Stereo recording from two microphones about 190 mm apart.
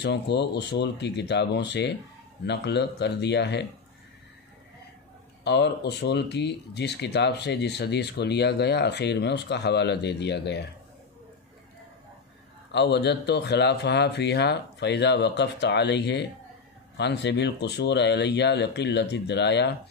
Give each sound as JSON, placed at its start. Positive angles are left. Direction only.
{"t": 0.0, "sound": "speech", "side_deg": 65}
{"t": 5.4, "sound": "speech", "side_deg": 65}
{"t": 12.7, "sound": "speech", "side_deg": 65}